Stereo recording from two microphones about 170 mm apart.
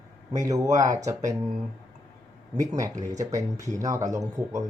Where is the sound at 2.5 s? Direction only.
20° right (ahead or behind).